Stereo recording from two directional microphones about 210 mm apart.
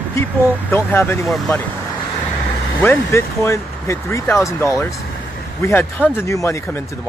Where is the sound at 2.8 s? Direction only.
10° left (ahead or behind).